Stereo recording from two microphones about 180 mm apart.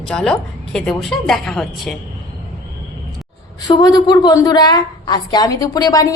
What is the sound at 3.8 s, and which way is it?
A woman's voice, 20° left (ahead or behind).